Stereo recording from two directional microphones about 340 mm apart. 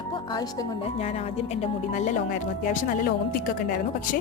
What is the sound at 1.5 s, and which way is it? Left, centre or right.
Speech, centre.